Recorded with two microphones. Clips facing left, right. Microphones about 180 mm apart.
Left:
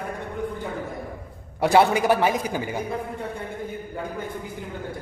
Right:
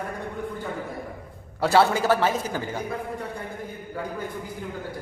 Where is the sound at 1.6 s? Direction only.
15° left (ahead or behind).